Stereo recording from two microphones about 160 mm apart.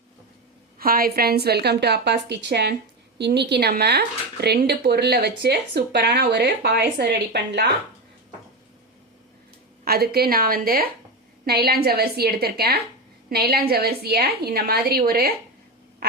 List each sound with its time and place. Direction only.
0.8 s speech: 65° right (ahead or behind); by 7.7 s 90° right
9.8 s a woman's voice: 80° right
11.4 s a woman's voice: 80° right